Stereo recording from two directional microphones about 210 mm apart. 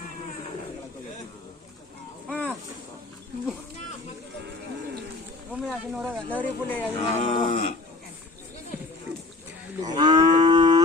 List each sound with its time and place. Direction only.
2.3 s a sound: 5° left (ahead or behind)
5.6 s speech: 5° right (ahead or behind)
6.3 s speech: 10° left (ahead or behind)
7.2 s livestock: 35° left (ahead or behind)
9.8 s livestock: 20° right (ahead or behind)